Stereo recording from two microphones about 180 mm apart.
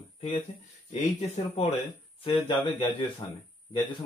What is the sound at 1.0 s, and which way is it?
Speech, 40° left (ahead or behind).